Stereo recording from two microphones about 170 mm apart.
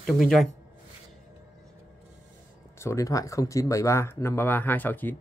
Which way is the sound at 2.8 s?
20° left (ahead or behind).